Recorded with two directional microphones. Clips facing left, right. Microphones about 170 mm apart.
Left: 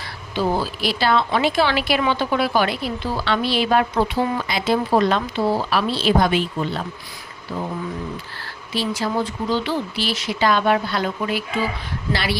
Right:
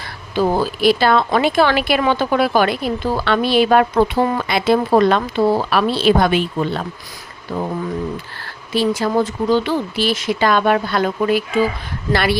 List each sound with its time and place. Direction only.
0.3 s a woman's voice: 50° right (ahead or behind)
8.7 s speech: 50° right (ahead or behind)